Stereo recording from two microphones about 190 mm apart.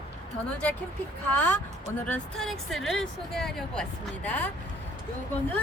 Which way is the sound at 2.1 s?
5° left (ahead or behind).